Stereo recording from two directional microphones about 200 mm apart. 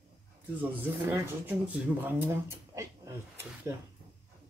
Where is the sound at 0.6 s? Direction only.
10° right (ahead or behind).